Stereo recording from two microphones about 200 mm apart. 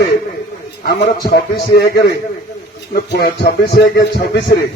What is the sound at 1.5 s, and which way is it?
A man's voice, 55° left (ahead or behind).